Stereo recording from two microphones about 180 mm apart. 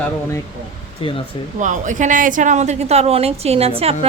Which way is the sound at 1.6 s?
45° right (ahead or behind).